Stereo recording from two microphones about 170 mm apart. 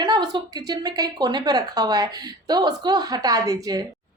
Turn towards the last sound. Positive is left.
turn(degrees=-20)  # may be behind; listen again after turning